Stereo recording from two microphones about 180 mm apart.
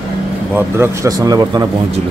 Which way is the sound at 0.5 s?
15° right (ahead or behind).